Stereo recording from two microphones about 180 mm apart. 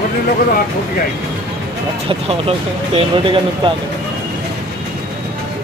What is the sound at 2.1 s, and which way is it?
Speech, 35° right (ahead or behind).